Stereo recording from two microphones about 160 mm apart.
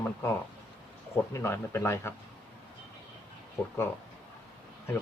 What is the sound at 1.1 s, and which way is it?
Speech, 15° left (ahead or behind).